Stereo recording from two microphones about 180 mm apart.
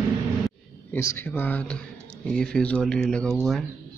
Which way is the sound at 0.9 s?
15° left (ahead or behind).